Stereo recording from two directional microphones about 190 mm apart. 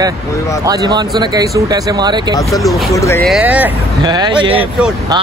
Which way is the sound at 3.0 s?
15° left (ahead or behind).